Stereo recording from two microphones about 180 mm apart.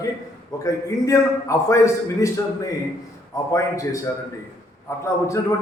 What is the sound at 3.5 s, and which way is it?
Speech, 15° left (ahead or behind).